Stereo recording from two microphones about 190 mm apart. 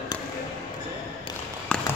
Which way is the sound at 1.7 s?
5° left (ahead or behind).